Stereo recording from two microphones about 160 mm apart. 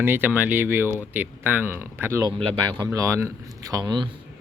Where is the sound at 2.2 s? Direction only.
30° right (ahead or behind).